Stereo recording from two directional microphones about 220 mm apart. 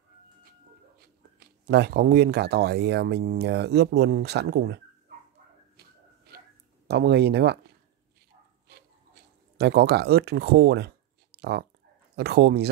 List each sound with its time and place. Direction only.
0.5 s speech: 45° right (ahead or behind)
5.8 s shuffle: 45° right (ahead or behind)
6.9 s speech: 50° right (ahead or behind)
9.6 s speech: 50° right (ahead or behind)